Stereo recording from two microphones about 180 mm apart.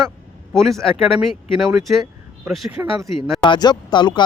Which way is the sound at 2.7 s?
10° right (ahead or behind).